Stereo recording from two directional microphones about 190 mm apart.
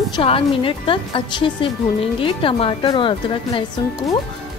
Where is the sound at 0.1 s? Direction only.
25° left (ahead or behind).